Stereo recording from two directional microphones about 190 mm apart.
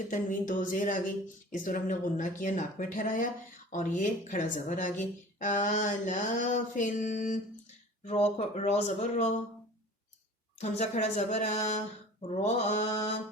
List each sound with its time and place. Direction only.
0.1 s speech: 45° left (ahead or behind)
8.4 s speech: 35° left (ahead or behind)
10.6 s speech: 35° left (ahead or behind)